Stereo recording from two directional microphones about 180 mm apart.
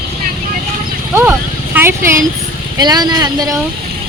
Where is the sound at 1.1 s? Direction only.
10° right (ahead or behind).